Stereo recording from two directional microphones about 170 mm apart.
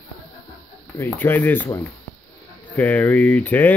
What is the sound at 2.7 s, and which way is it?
Speech, 10° left (ahead or behind).